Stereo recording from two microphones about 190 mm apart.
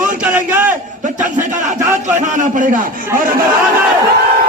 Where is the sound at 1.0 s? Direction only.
40° right (ahead or behind).